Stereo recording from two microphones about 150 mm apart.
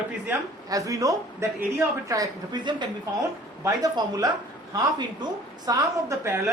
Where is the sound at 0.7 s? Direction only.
25° right (ahead or behind).